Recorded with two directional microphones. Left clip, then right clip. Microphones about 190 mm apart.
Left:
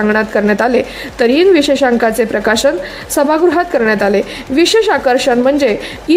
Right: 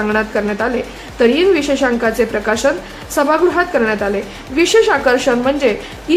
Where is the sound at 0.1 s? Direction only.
40° left (ahead or behind).